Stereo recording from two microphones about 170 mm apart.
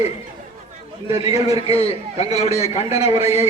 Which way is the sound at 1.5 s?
35° left (ahead or behind).